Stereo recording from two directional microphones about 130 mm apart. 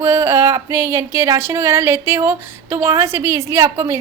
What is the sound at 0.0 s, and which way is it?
Speech, 20° right (ahead or behind).